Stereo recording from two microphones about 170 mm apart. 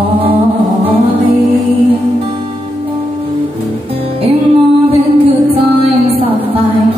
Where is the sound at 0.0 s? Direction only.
35° right (ahead or behind).